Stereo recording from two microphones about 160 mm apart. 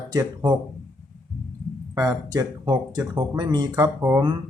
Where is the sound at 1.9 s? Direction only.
20° right (ahead or behind).